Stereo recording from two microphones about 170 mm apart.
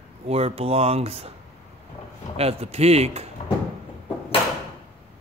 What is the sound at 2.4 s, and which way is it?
Speech, 35° right (ahead or behind).